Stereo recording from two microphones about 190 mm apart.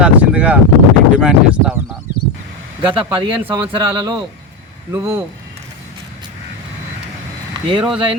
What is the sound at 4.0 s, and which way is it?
Speech, 25° right (ahead or behind).